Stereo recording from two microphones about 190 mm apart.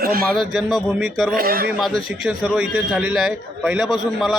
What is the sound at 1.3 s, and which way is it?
Speech, 55° right (ahead or behind).